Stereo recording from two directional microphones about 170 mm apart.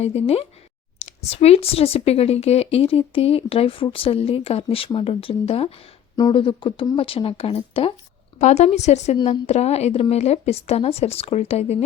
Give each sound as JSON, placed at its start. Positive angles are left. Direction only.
{"t": 0.0, "sound": "speech", "side_deg": 40}